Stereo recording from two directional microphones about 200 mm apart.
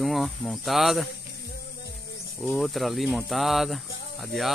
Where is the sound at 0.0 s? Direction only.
Centre (ahead or behind).